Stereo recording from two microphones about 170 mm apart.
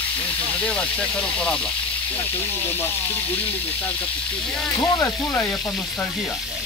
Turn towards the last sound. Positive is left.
turn(degrees=20)  # may be behind; listen again after turning